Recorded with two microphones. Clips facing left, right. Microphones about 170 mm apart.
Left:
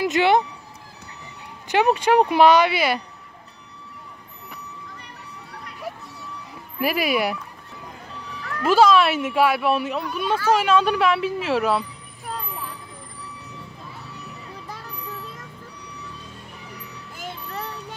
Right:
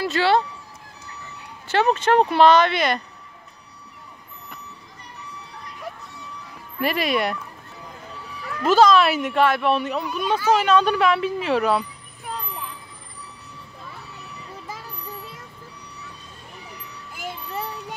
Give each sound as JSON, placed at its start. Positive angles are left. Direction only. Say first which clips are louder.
{"t": 0.0, "sound": "speech", "louder": "left 1 dB", "side_deg": 20}
{"t": 1.7, "sound": "speech", "louder": "left 1 dB", "side_deg": 15}
{"t": 6.8, "sound": "speech", "louder": "even", "side_deg": 5}
{"t": 8.6, "sound": "speech", "louder": "even", "side_deg": 5}
{"t": 17.1, "sound": "music", "louder": "right 2 dB", "side_deg": -10}